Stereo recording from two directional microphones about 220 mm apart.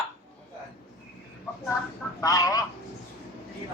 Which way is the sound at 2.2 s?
15° left (ahead or behind).